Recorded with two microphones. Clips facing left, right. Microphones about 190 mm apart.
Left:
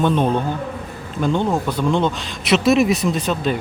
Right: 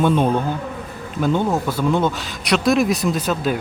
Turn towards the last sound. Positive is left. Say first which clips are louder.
# even
turn(degrees=-5)  # may be behind; listen again after turning